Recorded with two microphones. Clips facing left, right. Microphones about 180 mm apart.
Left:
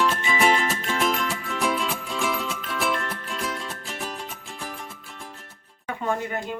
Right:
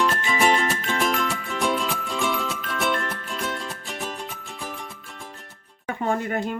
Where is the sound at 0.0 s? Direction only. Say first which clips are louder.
Even; centre (ahead or behind).